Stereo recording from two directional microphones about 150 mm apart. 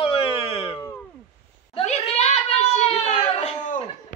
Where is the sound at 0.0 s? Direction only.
40° left (ahead or behind).